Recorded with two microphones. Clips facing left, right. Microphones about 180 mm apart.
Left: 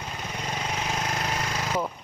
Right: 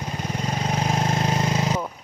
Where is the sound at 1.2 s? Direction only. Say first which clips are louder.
Right 7 dB; 25° right (ahead or behind).